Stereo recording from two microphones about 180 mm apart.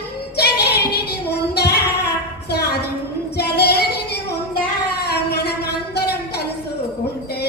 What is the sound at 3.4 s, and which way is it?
Child singing, 65° left (ahead or behind).